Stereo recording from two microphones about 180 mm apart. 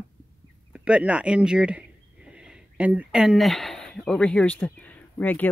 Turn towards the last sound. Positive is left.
turn(degrees=10)  # may be behind; listen again after turning